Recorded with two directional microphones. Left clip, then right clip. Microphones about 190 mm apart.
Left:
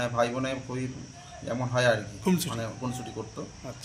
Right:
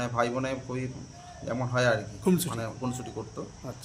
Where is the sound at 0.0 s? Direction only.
Centre (ahead or behind).